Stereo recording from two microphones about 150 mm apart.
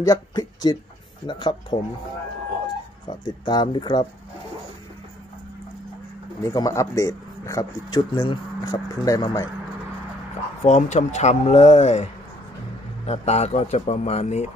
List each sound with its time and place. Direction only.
0.0 s speech: 25° left (ahead or behind)
3.1 s speech: 30° left (ahead or behind)
6.4 s speech: 20° left (ahead or behind)
10.6 s speech: 50° left (ahead or behind)